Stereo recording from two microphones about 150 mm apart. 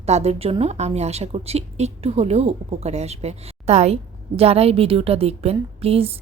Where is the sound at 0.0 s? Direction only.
45° right (ahead or behind).